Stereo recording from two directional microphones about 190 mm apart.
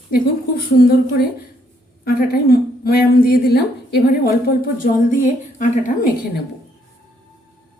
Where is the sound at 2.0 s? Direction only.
55° left (ahead or behind).